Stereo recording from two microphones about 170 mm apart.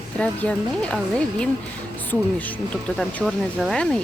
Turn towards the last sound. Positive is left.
turn(degrees=5)  # may be behind; listen again after turning